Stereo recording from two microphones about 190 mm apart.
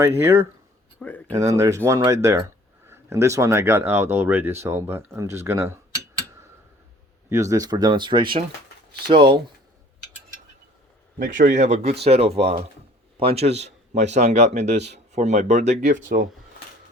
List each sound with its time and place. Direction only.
0.0 s speech: 15° right (ahead or behind)
0.9 s speech: 10° left (ahead or behind)
1.5 s speech: 15° right (ahead or behind)
7.3 s speech: 15° right (ahead or behind)
11.2 s speech: 45° right (ahead or behind)